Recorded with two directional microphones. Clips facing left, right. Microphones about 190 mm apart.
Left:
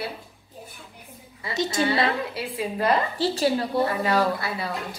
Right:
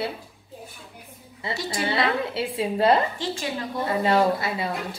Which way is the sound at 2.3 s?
25° right (ahead or behind).